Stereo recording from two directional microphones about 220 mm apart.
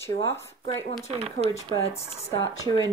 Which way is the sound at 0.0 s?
10° left (ahead or behind).